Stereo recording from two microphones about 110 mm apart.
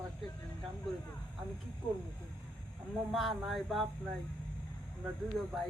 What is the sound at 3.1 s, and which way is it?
Speech, centre (ahead or behind).